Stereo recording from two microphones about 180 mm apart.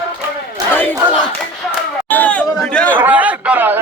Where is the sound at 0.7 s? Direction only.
10° left (ahead or behind).